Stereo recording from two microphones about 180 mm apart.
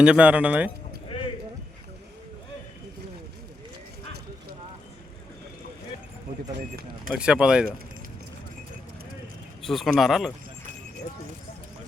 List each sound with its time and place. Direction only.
0.0 s speech: 5° right (ahead or behind)
6.5 s speech: 60° right (ahead or behind)
7.1 s speech: 5° right (ahead or behind)
9.6 s speech: centre (ahead or behind)